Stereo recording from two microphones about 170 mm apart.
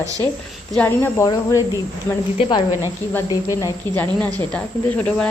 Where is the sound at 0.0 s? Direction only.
20° right (ahead or behind).